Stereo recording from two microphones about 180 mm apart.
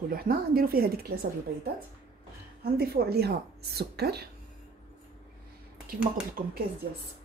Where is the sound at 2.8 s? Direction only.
60° right (ahead or behind).